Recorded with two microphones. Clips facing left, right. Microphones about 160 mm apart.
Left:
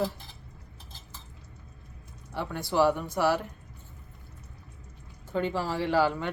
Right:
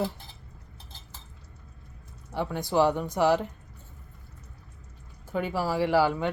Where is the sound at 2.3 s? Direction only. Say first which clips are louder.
Right 2 dB; 15° right (ahead or behind).